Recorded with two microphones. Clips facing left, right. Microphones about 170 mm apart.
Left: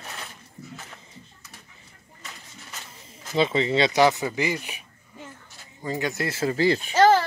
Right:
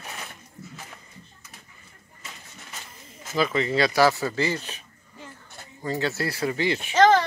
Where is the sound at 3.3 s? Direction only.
25° left (ahead or behind).